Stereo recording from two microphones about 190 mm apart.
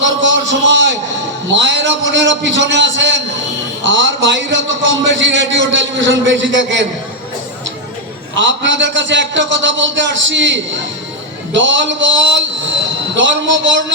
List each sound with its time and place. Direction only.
0.0 s a man's voice: 75° right (ahead or behind)
8.4 s a man's voice: 75° right (ahead or behind)